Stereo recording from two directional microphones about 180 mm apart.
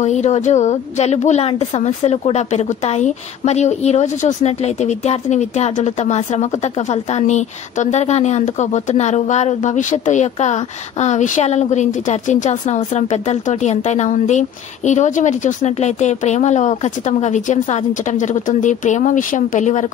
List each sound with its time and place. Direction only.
0.0 s a woman's voice: 40° left (ahead or behind)